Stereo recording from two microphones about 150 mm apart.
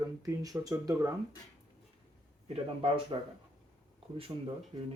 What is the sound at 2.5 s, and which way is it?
Speech, 35° right (ahead or behind).